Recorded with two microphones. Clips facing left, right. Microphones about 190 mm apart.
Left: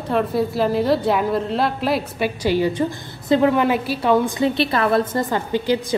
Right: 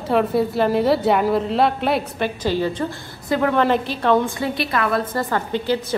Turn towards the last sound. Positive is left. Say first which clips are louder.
# left 2 dB
turn(degrees=15)  # may be behind; listen again after turning